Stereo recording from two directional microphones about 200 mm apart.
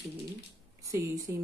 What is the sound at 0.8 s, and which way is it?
Speech, 15° right (ahead or behind).